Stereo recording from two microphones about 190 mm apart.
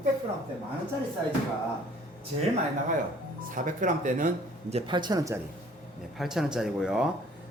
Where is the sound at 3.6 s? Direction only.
45° right (ahead or behind).